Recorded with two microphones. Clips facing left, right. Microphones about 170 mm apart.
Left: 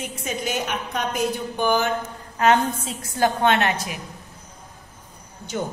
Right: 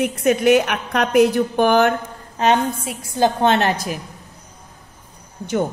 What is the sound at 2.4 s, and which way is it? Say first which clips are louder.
A woman's voice: right 1 dB; 20° right (ahead or behind).